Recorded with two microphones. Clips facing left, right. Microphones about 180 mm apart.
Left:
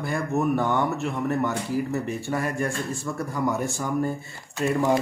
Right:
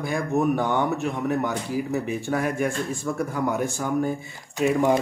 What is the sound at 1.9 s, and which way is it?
Speech, centre (ahead or behind).